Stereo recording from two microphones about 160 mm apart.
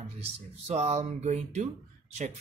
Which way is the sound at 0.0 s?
40° right (ahead or behind).